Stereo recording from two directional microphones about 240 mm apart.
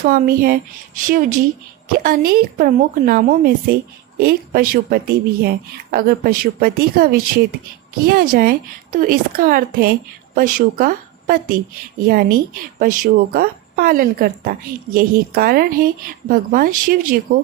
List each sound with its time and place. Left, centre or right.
0.0 s a woman's voice: right